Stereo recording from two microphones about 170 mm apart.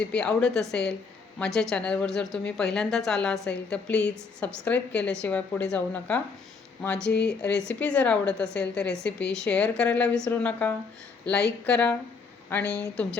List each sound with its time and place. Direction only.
0.0 s a woman's voice: 5° left (ahead or behind)
7.1 s speech: 75° left (ahead or behind)
7.7 s a woman's voice: 5° left (ahead or behind)